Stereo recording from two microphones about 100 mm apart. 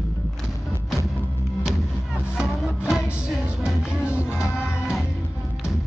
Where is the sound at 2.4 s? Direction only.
5° right (ahead or behind).